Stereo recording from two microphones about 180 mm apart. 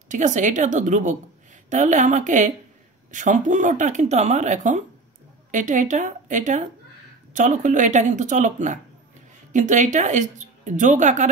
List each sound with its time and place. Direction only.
0.1 s speech: 45° right (ahead or behind)